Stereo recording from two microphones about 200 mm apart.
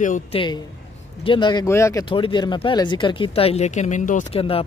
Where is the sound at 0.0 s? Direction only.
40° left (ahead or behind).